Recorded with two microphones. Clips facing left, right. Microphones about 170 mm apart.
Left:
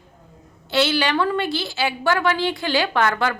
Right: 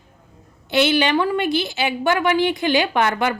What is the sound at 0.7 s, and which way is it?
A woman's voice, 20° right (ahead or behind).